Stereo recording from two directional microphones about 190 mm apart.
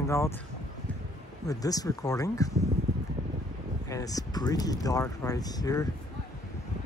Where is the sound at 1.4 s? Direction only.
20° left (ahead or behind).